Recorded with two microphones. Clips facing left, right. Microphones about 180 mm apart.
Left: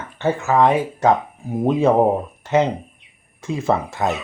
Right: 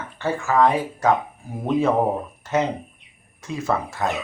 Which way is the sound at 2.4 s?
25° left (ahead or behind).